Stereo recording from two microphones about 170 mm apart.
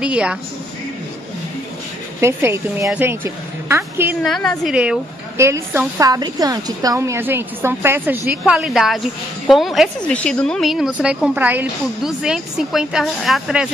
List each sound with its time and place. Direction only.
0.0 s a woman's voice: 5° right (ahead or behind)
2.1 s a woman's voice: 15° right (ahead or behind)
4.2 s speech: 5° left (ahead or behind)
5.4 s a woman's voice: 15° right (ahead or behind)
8.5 s speech: centre (ahead or behind)